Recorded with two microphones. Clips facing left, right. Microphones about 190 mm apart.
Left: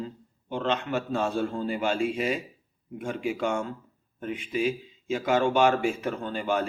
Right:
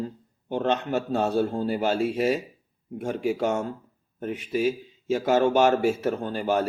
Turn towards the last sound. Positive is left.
turn(degrees=-40)  # may be behind; listen again after turning